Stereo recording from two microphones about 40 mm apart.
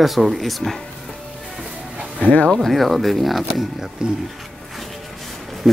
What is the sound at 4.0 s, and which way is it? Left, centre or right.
Speech, right.